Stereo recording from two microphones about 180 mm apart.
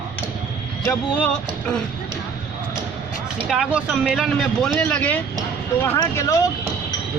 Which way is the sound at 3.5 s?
Centre (ahead or behind).